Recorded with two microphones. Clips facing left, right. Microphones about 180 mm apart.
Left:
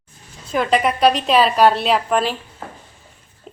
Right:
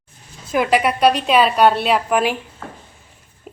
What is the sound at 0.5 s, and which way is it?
A woman's voice, 10° right (ahead or behind).